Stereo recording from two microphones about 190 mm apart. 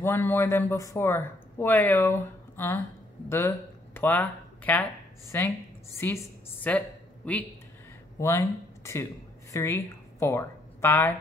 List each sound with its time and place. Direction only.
0.0 s a man's voice: 10° left (ahead or behind)